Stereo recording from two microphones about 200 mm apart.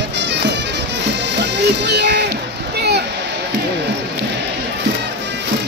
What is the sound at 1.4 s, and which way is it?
Music, 55° right (ahead or behind).